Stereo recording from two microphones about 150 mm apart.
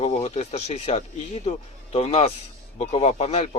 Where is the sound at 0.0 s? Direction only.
45° left (ahead or behind).